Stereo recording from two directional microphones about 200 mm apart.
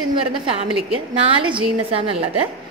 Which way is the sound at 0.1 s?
25° right (ahead or behind).